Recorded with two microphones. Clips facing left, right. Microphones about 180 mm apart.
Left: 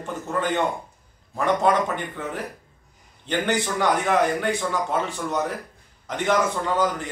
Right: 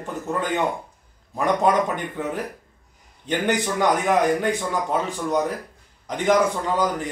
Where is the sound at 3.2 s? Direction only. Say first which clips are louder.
Right 1 dB; 15° right (ahead or behind).